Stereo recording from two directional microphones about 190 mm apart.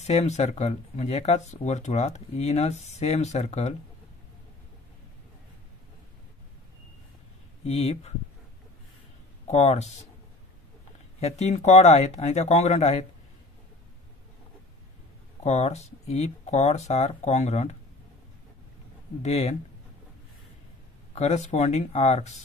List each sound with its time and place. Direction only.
0.0 s speech: 35° left (ahead or behind)
7.6 s speech: 35° left (ahead or behind)
9.5 s speech: 35° left (ahead or behind)
11.1 s speech: 35° left (ahead or behind)
15.4 s speech: 35° left (ahead or behind)
19.2 s speech: 35° left (ahead or behind)
21.1 s speech: 35° left (ahead or behind)